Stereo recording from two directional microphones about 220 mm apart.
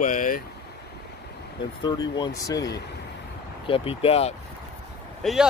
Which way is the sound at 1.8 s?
20° left (ahead or behind).